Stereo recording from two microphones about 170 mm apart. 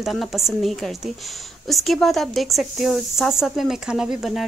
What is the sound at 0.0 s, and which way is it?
A woman's voice, centre (ahead or behind).